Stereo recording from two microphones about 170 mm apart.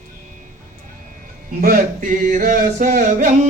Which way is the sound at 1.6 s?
50° right (ahead or behind).